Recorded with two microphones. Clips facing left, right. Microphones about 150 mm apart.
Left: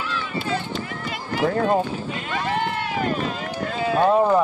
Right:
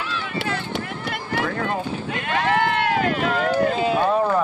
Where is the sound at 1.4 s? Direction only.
35° left (ahead or behind).